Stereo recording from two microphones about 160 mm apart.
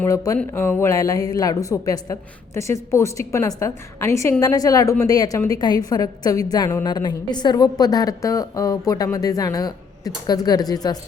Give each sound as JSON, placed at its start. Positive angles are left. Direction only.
{"t": 0.0, "sound": "a woman's voice", "side_deg": 20}